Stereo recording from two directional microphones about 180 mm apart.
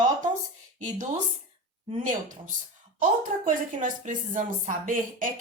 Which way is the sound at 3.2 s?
45° right (ahead or behind).